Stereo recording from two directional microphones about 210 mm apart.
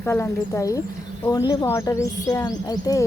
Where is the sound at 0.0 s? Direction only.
10° left (ahead or behind).